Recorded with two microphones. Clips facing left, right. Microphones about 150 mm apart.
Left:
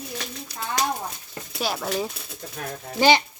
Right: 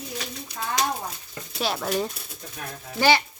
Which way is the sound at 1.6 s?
Centre (ahead or behind).